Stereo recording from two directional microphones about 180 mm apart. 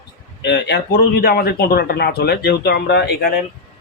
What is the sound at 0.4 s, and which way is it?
Speech, 70° left (ahead or behind).